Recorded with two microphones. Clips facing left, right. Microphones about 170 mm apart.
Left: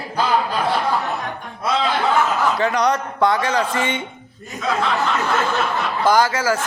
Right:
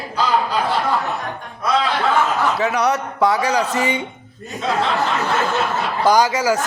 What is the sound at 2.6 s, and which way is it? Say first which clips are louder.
A man's voice: even; 5° right (ahead or behind).